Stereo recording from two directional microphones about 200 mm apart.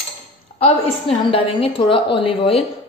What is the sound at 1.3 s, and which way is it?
A woman's voice, 25° left (ahead or behind).